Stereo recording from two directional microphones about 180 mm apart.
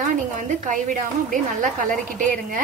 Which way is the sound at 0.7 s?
45° right (ahead or behind).